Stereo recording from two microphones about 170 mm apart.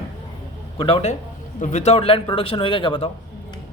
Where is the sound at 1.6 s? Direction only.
45° left (ahead or behind).